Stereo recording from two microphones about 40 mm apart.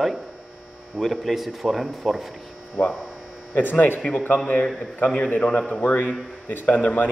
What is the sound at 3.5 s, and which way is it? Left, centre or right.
Speech, left.